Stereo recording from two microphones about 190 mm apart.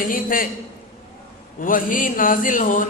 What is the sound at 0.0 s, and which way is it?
Speech, 45° left (ahead or behind).